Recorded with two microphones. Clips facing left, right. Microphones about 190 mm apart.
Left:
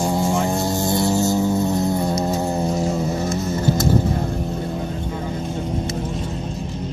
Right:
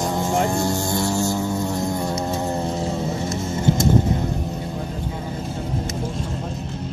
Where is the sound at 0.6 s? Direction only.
15° left (ahead or behind).